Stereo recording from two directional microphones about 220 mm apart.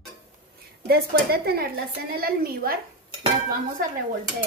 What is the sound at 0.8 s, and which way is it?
A woman's voice, 45° right (ahead or behind).